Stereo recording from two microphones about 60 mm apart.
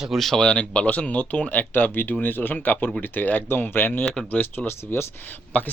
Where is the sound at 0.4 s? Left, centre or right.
Centre.